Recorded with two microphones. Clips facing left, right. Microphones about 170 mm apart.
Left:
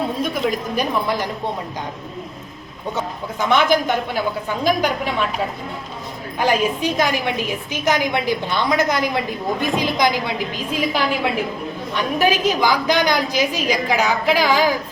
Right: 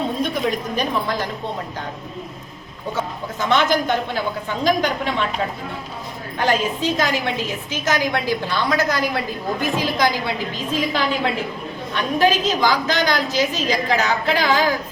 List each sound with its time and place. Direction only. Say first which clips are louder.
0.8 s a woman's voice: left 4 dB; 15° left (ahead or behind)
3.5 s a woman's voice: left 1 dB; 10° left (ahead or behind)
6.4 s a woman's voice: left 2 dB; 10° left (ahead or behind)